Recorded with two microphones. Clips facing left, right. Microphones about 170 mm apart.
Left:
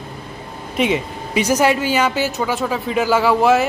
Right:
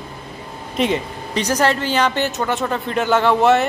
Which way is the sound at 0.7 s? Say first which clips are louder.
Left 1 dB; 5° left (ahead or behind).